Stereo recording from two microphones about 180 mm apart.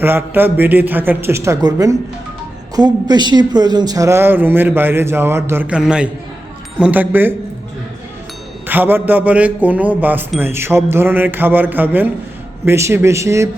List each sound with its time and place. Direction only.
0.0 s speech: 10° right (ahead or behind)
8.6 s speech: 10° right (ahead or behind)